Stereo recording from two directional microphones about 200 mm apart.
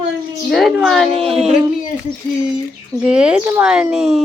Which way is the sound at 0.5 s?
Centre (ahead or behind).